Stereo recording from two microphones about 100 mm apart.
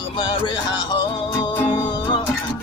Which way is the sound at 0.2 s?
50° left (ahead or behind).